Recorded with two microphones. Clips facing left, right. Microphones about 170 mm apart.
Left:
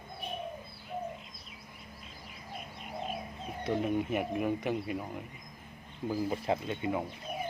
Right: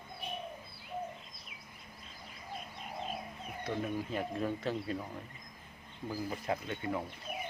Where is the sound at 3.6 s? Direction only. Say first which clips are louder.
Left 6 dB; 25° left (ahead or behind).